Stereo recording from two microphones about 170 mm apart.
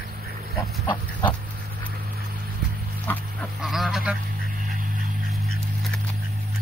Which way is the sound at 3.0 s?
Centre (ahead or behind).